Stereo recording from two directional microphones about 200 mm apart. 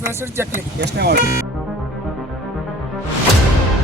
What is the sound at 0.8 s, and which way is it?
Speech, 55° right (ahead or behind).